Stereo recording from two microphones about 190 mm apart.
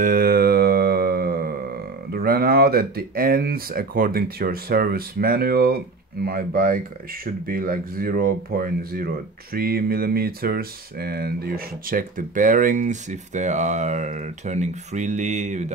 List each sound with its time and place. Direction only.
0.0 s mantra: 50° right (ahead or behind)
2.1 s speech: 55° right (ahead or behind)